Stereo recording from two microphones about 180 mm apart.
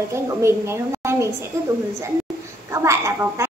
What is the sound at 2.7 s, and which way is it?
Speech, 15° right (ahead or behind).